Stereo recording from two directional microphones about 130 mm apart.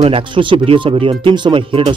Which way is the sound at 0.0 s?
40° right (ahead or behind).